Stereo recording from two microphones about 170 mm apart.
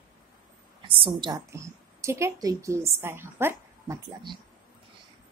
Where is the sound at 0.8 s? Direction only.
30° right (ahead or behind).